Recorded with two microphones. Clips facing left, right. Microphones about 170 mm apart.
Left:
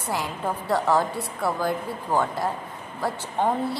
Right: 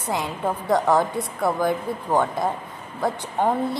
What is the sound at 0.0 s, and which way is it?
A woman's voice, 20° right (ahead or behind).